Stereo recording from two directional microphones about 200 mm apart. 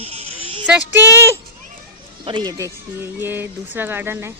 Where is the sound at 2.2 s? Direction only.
25° right (ahead or behind).